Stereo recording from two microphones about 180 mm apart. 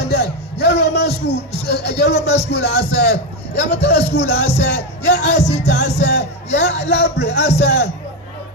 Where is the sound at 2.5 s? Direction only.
65° left (ahead or behind).